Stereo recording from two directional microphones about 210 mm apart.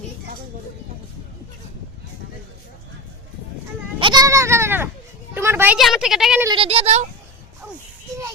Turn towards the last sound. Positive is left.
turn(degrees=-30)  # may be behind; listen again after turning